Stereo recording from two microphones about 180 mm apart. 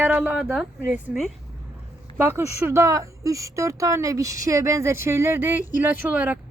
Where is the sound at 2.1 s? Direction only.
15° right (ahead or behind).